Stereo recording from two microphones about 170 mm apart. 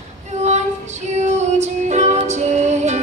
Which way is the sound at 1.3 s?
40° right (ahead or behind).